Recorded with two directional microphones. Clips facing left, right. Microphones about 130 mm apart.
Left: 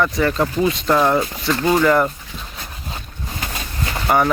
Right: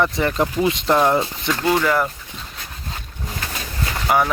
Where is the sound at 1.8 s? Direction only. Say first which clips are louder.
Left 4 dB; 5° left (ahead or behind).